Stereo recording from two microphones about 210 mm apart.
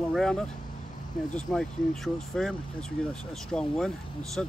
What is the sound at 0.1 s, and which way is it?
Speech, centre (ahead or behind).